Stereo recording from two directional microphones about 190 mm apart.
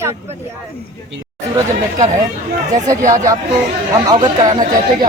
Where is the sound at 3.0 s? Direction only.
40° right (ahead or behind).